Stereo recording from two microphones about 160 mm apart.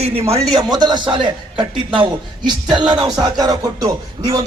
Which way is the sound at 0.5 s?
25° right (ahead or behind).